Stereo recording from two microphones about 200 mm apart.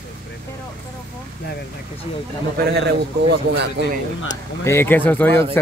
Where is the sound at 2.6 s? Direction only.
55° right (ahead or behind).